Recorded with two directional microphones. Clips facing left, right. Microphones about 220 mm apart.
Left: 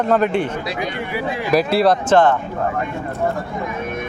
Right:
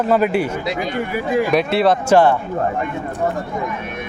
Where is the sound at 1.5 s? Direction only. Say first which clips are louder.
Left 3 dB; centre (ahead or behind).